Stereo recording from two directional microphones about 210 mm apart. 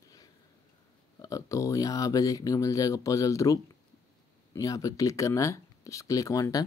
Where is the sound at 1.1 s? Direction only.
15° left (ahead or behind).